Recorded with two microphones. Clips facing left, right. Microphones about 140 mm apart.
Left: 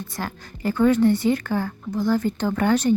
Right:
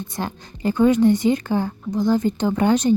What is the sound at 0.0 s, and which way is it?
A woman's voice, 20° right (ahead or behind).